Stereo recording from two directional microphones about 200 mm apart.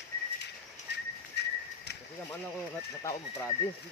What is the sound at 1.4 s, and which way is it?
Bird flight, 55° left (ahead or behind).